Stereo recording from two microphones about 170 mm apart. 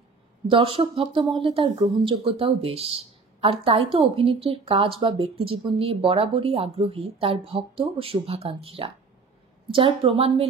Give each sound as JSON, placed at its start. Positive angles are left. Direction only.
{"t": 0.5, "sound": "speech", "side_deg": -30}